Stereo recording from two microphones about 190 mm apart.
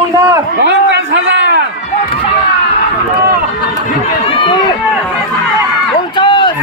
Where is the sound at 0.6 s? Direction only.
65° right (ahead or behind).